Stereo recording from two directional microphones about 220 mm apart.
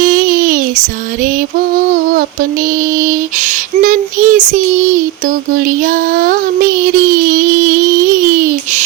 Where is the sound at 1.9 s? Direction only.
40° right (ahead or behind).